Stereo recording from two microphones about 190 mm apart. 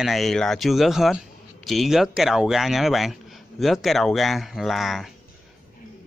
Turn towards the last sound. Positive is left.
turn(degrees=0)  # may be behind; listen again after turning